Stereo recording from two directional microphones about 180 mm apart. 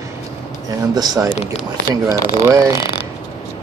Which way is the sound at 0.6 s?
20° right (ahead or behind).